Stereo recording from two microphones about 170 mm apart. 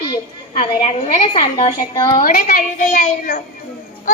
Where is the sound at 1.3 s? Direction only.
30° left (ahead or behind).